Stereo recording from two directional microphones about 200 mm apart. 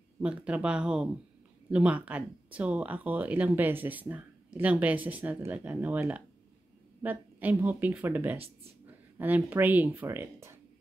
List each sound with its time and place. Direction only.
0.2 s speech: 5° right (ahead or behind)